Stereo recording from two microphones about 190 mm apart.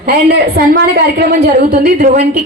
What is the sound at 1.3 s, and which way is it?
Speech, 50° right (ahead or behind).